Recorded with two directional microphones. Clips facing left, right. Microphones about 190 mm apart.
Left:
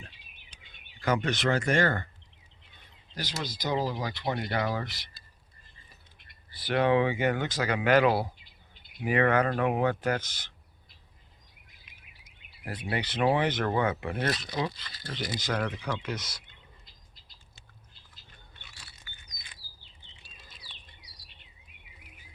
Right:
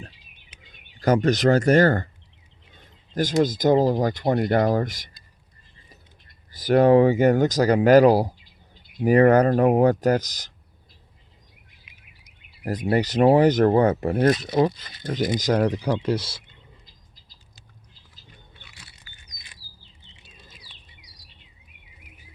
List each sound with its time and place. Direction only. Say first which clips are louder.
1.0 s speech: right 9 dB; 40° right (ahead or behind)
3.2 s speech: right 16 dB; 45° right (ahead or behind)
6.5 s speech: right 9 dB; 40° right (ahead or behind)
12.6 s speech: right 11 dB; 40° right (ahead or behind)
14.8 s speech: right 10 dB; 20° right (ahead or behind)
15.4 s speech: right 9 dB; 40° right (ahead or behind)